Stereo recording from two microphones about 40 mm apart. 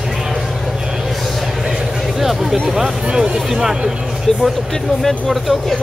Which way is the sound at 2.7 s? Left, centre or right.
Centre.